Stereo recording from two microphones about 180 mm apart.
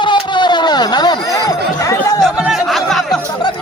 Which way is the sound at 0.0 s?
25° left (ahead or behind).